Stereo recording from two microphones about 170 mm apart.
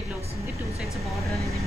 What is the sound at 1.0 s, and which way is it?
Speech, centre (ahead or behind).